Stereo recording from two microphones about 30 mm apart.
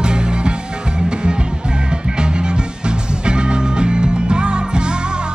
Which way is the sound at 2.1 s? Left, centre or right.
Right.